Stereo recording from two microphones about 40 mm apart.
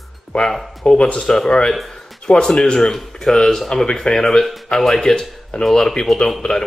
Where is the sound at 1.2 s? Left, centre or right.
Centre.